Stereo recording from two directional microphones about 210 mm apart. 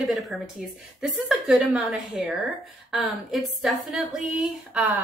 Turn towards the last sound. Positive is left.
turn(degrees=0)  # may be behind; listen again after turning